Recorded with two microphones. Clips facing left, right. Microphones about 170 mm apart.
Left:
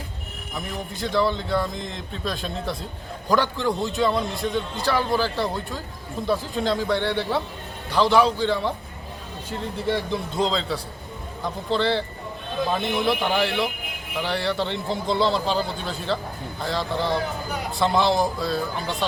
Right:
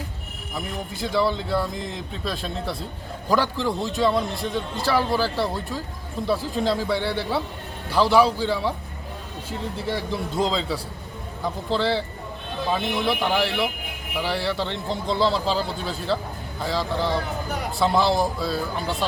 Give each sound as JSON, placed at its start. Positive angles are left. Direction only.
{"t": 0.5, "sound": "a man's voice", "side_deg": 0}
{"t": 9.9, "sound": "a man's voice", "side_deg": -5}